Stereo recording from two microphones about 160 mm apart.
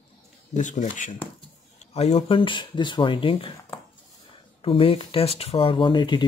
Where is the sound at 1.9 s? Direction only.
40° left (ahead or behind).